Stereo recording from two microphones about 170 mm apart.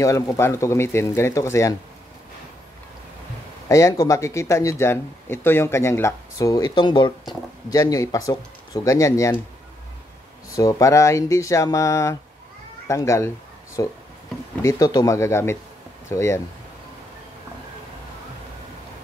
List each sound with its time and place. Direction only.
0.0 s speech: 20° left (ahead or behind)
3.6 s speech: 20° left (ahead or behind)
10.5 s speech: 20° left (ahead or behind)